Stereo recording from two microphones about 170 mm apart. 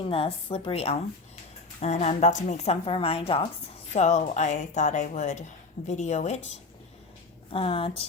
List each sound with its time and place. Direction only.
0.0 s a woman's voice: 35° left (ahead or behind)
7.5 s a woman's voice: 35° left (ahead or behind)